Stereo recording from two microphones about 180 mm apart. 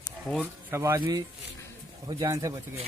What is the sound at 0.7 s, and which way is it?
Speech, 15° right (ahead or behind).